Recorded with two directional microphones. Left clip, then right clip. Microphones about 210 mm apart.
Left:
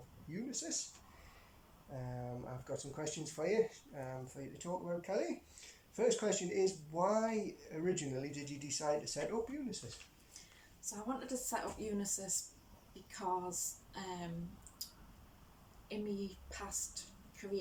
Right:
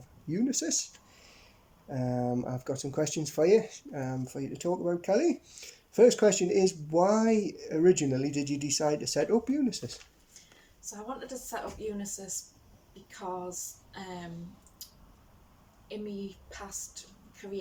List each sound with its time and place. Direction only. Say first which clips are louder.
0.3 s speech: right 13 dB; 50° right (ahead or behind)
1.9 s speech: right 15 dB; 50° right (ahead or behind)
11.5 s speech: right 4 dB; 5° left (ahead or behind)
13.9 s speech: right 5 dB; 5° left (ahead or behind)
14.8 s a sound: even; 5° left (ahead or behind)
15.9 s a woman's voice: right 3 dB; 5° left (ahead or behind)